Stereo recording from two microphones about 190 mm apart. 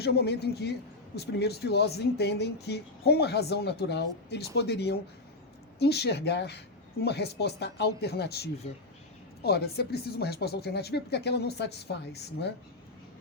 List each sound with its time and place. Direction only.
0.0 s speech: 60° left (ahead or behind)